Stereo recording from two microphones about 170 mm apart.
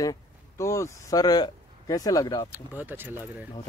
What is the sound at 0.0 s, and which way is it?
Speech, 20° left (ahead or behind).